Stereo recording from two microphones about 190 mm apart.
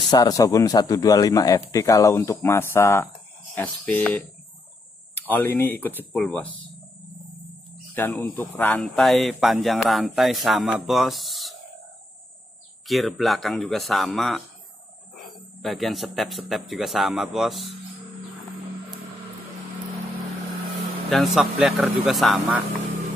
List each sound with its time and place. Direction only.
0.1 s a man's voice: 20° left (ahead or behind)
5.3 s a man's voice: 10° left (ahead or behind)
7.9 s speech: 10° left (ahead or behind)
12.8 s speech: centre (ahead or behind)
21.1 s speech: centre (ahead or behind)